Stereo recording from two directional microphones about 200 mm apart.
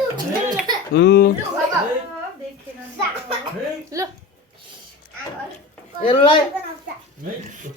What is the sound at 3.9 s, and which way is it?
Speech, 15° right (ahead or behind).